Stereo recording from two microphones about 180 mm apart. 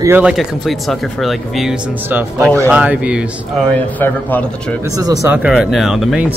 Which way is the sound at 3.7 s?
10° left (ahead or behind).